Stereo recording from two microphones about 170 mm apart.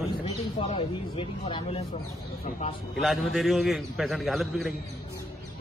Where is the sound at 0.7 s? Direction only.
35° left (ahead or behind).